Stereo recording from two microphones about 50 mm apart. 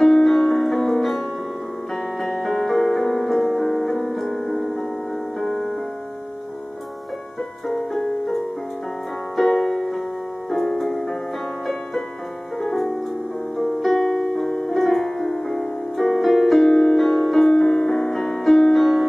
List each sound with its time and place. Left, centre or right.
0.0 s music: centre
2.2 s music: centre
7.6 s music: centre
9.4 s piano: centre
10.5 s music: centre
12.5 s music: centre
14.2 s music: centre
14.7 s music: centre